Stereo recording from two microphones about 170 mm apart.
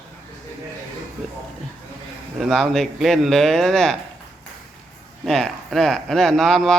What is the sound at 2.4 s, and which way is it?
Speech, centre (ahead or behind).